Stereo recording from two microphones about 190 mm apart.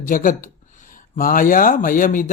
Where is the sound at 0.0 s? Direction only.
45° left (ahead or behind).